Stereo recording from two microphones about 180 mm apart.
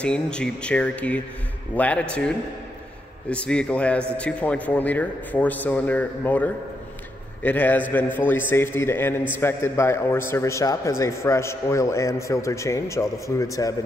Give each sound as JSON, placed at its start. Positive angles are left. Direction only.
{"t": 0.0, "sound": "a man's voice", "side_deg": 5}